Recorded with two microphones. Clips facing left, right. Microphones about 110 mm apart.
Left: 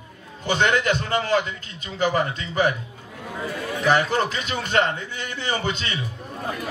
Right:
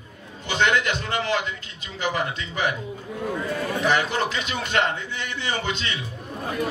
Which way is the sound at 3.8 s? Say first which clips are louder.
Left 4 dB; 40° left (ahead or behind).